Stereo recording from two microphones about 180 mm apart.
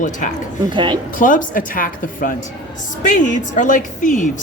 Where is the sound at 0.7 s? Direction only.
25° right (ahead or behind).